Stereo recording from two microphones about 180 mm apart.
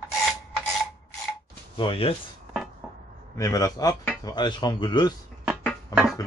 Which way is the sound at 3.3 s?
20° left (ahead or behind).